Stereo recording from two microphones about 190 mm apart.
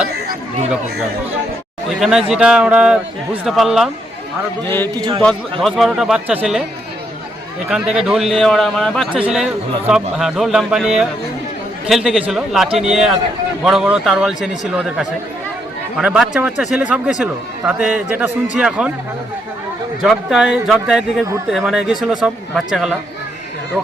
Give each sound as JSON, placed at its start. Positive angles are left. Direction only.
{"t": 1.9, "sound": "speech", "side_deg": 0}
{"t": 4.9, "sound": "a man's voice", "side_deg": -20}
{"t": 5.2, "sound": "speech", "side_deg": 5}
{"t": 7.7, "sound": "a man's voice", "side_deg": -5}
{"t": 20.0, "sound": "speech", "side_deg": 0}